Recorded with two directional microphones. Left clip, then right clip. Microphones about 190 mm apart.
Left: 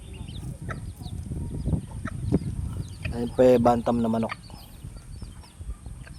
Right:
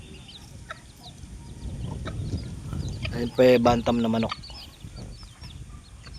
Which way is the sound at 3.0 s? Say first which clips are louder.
Even; 5° left (ahead or behind).